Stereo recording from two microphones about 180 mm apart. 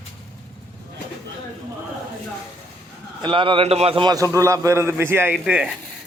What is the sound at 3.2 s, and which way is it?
A man's voice, 30° right (ahead or behind).